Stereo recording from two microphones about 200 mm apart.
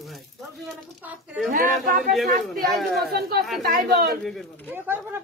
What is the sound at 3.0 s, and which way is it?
Speech, 50° right (ahead or behind).